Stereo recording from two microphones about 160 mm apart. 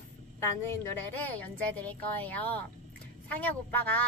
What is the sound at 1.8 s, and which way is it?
A child's voice, 10° left (ahead or behind).